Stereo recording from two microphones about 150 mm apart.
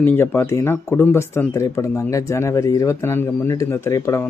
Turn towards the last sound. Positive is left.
turn(degrees=20)  # may be behind; listen again after turning